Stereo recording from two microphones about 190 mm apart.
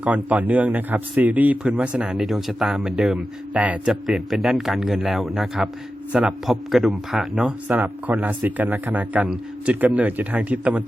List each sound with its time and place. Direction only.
0.0 s speech: 10° right (ahead or behind)